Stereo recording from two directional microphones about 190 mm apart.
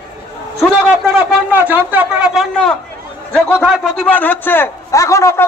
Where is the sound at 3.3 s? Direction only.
5° left (ahead or behind).